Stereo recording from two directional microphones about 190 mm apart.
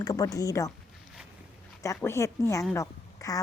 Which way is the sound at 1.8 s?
15° left (ahead or behind).